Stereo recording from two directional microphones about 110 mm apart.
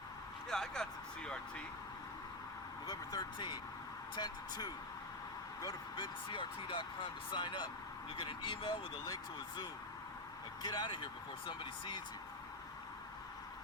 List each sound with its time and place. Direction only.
0.4 s speech: 5° left (ahead or behind)
2.8 s speech: 35° left (ahead or behind)
10.6 s speech: 40° left (ahead or behind)